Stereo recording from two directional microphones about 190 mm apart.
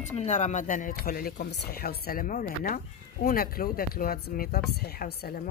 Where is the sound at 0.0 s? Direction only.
40° left (ahead or behind).